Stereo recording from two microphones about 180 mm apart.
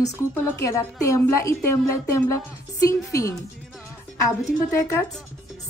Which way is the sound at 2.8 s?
20° left (ahead or behind).